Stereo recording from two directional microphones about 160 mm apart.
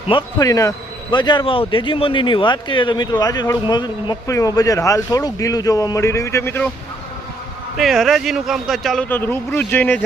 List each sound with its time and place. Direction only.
0.1 s a man's voice: 25° left (ahead or behind)
7.8 s speech: centre (ahead or behind)
9.0 s speech: 15° left (ahead or behind)